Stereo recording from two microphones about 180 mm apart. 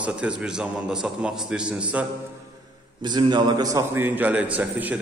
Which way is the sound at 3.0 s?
25° right (ahead or behind).